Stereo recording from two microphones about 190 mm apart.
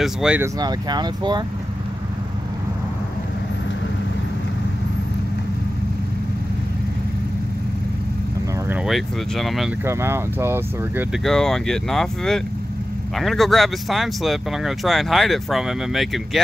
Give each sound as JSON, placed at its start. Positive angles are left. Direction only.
{"t": 0.0, "sound": "speech", "side_deg": -5}
{"t": 0.6, "sound": "speech", "side_deg": -20}
{"t": 8.6, "sound": "speech", "side_deg": -5}
{"t": 9.8, "sound": "speech", "side_deg": -15}
{"t": 11.2, "sound": "speech", "side_deg": 0}